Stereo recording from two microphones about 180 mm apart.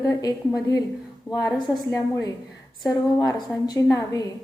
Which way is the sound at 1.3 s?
Centre (ahead or behind).